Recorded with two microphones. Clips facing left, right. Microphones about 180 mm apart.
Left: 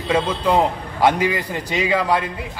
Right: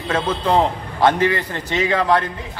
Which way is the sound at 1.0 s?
10° left (ahead or behind).